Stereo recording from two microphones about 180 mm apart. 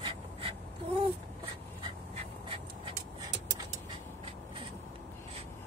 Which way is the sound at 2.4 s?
30° right (ahead or behind).